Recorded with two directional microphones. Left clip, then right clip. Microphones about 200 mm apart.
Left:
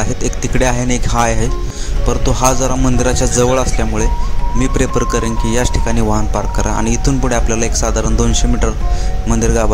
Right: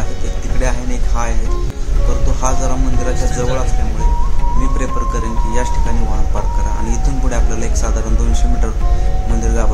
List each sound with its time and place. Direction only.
0.6 s speech: 45° left (ahead or behind)
2.4 s speech: 45° left (ahead or behind)
4.7 s speech: 45° left (ahead or behind)
6.9 s speech: 45° left (ahead or behind)